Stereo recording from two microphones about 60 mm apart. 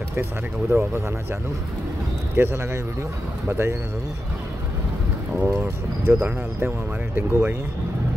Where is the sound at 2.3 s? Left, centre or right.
Right.